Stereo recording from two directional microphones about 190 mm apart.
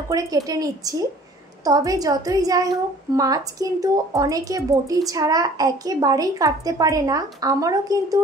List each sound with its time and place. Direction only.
0.1 s speech: 20° right (ahead or behind)